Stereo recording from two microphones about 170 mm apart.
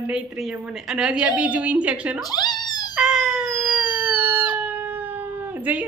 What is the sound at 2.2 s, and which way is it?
Cat, 25° left (ahead or behind).